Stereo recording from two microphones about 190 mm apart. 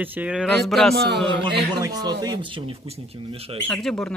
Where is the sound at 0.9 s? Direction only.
65° right (ahead or behind).